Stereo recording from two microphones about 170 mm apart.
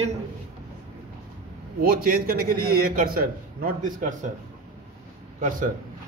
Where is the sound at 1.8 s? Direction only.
60° right (ahead or behind).